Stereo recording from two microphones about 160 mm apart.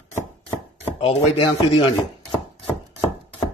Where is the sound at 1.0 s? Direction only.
35° left (ahead or behind).